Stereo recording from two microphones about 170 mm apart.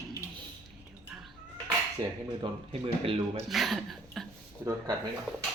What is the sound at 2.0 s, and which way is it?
Speech, 25° right (ahead or behind).